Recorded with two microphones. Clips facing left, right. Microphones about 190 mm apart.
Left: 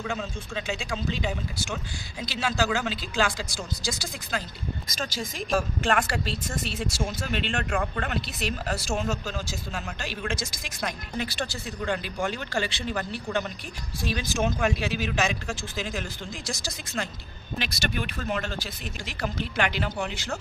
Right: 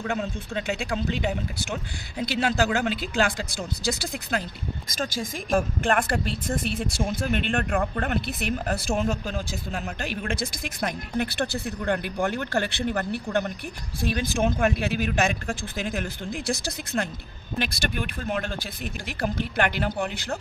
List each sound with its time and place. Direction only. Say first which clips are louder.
0.1 s speech: right 4 dB; 60° right (ahead or behind)